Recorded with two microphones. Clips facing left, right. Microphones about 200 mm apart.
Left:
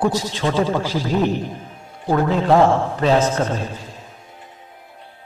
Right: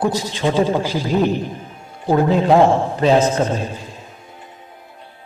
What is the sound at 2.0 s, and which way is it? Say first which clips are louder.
A man's voice: right 2 dB; 15° right (ahead or behind).